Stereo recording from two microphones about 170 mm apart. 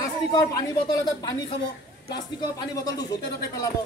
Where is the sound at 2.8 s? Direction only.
20° left (ahead or behind).